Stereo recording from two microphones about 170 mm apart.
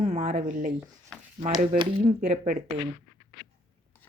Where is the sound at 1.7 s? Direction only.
40° right (ahead or behind).